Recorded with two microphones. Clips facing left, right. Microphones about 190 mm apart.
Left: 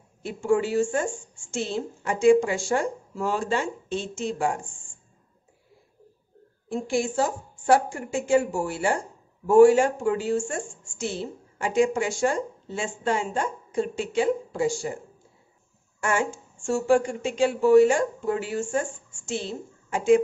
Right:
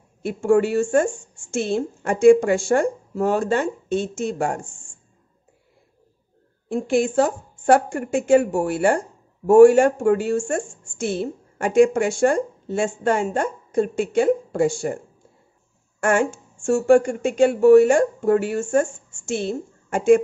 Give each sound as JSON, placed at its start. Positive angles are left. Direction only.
{"t": 0.2, "sound": "a woman's voice", "side_deg": -55}
{"t": 6.7, "sound": "a woman's voice", "side_deg": -60}
{"t": 16.0, "sound": "speech", "side_deg": -55}